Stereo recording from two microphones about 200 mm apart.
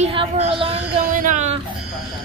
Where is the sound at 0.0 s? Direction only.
30° right (ahead or behind).